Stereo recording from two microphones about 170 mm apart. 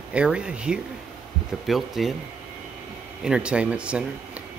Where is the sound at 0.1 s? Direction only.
5° right (ahead or behind).